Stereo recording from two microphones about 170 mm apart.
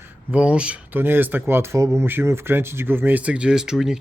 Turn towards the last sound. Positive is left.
turn(degrees=-5)  # may be behind; listen again after turning